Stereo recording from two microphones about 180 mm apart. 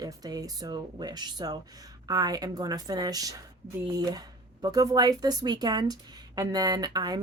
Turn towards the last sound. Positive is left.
turn(degrees=-20)  # may be behind; listen again after turning